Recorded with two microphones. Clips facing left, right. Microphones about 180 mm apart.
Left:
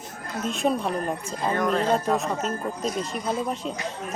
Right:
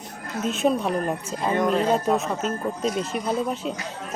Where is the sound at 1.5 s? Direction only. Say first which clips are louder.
Right 2 dB; 20° right (ahead or behind).